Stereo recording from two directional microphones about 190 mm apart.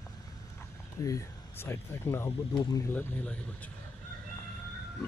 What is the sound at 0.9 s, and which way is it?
Speech, 15° left (ahead or behind).